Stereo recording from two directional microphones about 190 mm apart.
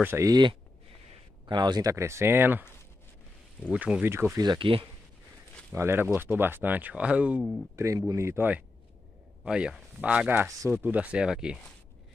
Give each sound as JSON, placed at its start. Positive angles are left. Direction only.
{"t": 0.0, "sound": "speech", "side_deg": -15}
{"t": 3.6, "sound": "speech", "side_deg": -5}
{"t": 5.7, "sound": "speech", "side_deg": -10}
{"t": 7.7, "sound": "speech", "side_deg": -15}